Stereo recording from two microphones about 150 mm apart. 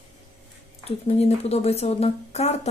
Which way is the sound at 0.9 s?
45° left (ahead or behind).